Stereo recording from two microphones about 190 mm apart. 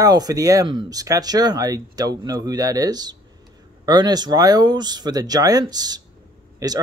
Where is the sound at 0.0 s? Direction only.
20° right (ahead or behind).